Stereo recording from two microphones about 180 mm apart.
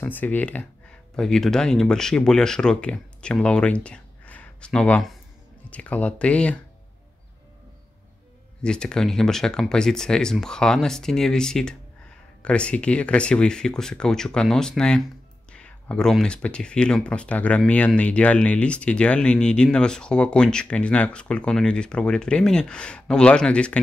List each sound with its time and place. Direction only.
0.0 s speech: 10° left (ahead or behind)
8.6 s speech: 5° left (ahead or behind)